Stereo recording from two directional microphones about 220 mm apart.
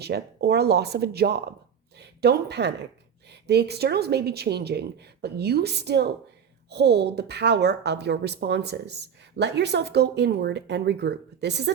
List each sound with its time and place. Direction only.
0.0 s a woman's voice: 50° right (ahead or behind)